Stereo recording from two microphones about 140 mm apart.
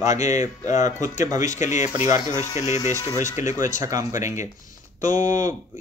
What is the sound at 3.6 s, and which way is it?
Speech, 25° right (ahead or behind).